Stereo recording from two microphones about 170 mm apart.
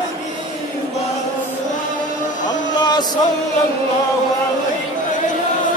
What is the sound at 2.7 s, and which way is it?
Music, 25° left (ahead or behind).